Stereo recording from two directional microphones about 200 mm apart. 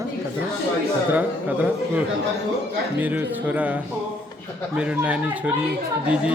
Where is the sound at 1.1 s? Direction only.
10° right (ahead or behind).